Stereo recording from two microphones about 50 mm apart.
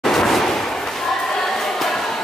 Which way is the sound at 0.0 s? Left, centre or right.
Centre.